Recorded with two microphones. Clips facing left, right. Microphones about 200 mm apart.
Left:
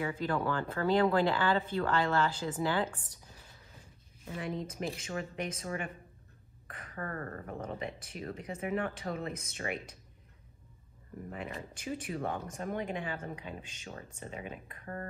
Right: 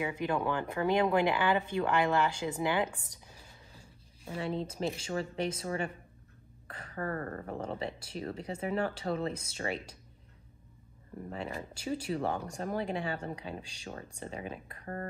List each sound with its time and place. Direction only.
0.0 s speech: 20° right (ahead or behind)
4.3 s speech: 30° right (ahead or behind)
11.2 s speech: 30° right (ahead or behind)